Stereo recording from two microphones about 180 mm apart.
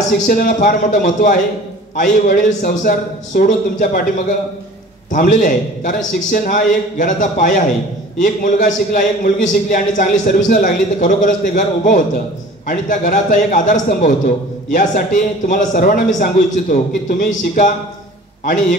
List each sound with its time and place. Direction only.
0.3 s a man's voice: 50° left (ahead or behind)
5.1 s a man's voice: 50° left (ahead or behind)